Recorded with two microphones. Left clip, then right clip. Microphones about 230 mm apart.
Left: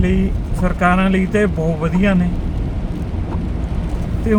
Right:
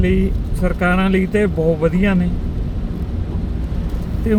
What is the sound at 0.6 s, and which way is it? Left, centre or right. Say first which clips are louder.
Speech: left 2 dB; left.